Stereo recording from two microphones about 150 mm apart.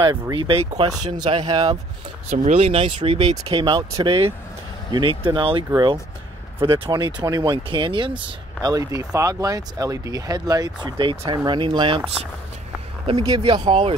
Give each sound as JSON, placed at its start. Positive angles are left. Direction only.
{"t": 0.0, "sound": "speech", "side_deg": -30}
{"t": 2.2, "sound": "speech", "side_deg": -55}
{"t": 13.0, "sound": "speech", "side_deg": -35}